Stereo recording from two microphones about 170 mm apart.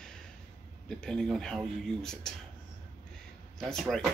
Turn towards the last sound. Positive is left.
turn(degrees=0)  # may be behind; listen again after turning